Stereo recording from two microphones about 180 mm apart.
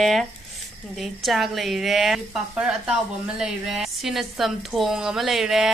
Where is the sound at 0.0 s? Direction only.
Centre (ahead or behind).